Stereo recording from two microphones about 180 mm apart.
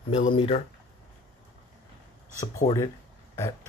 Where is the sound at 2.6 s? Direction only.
50° left (ahead or behind).